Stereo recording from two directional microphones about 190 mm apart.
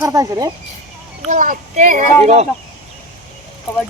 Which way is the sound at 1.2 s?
45° right (ahead or behind).